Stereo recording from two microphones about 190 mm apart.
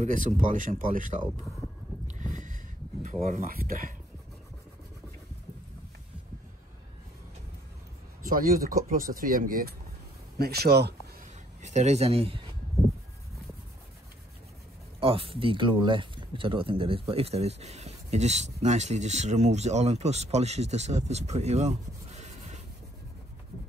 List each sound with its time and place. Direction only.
0.0 s speech: 40° right (ahead or behind)
2.0 s a sound: 40° right (ahead or behind)
3.3 s speech: 45° right (ahead or behind)
8.2 s speech: 45° right (ahead or behind)
11.6 s speech: 35° right (ahead or behind)
15.0 s speech: 30° right (ahead or behind)